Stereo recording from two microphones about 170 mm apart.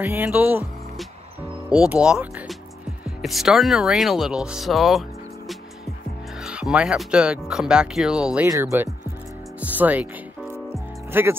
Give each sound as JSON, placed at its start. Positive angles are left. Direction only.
{"t": 0.0, "sound": "speech", "side_deg": -10}
{"t": 1.9, "sound": "speech", "side_deg": -5}
{"t": 6.4, "sound": "speech", "side_deg": -5}
{"t": 8.5, "sound": "speech", "side_deg": -15}
{"t": 10.7, "sound": "music", "side_deg": -15}